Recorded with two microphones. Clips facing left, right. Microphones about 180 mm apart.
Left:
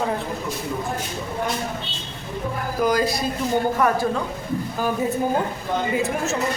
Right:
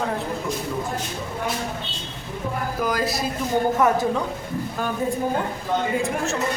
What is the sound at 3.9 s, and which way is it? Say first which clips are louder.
Speech: right 1 dB; 20° right (ahead or behind).